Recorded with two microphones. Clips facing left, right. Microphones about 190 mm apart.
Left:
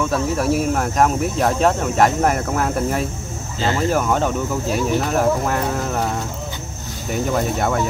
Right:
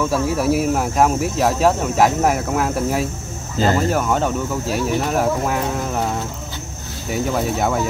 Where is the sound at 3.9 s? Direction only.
Centre (ahead or behind).